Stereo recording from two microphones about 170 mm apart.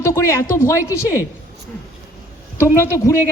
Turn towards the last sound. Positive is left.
turn(degrees=15)  # may be behind; listen again after turning